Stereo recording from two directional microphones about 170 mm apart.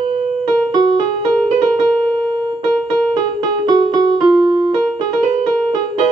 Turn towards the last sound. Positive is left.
turn(degrees=-30)  # may be behind; listen again after turning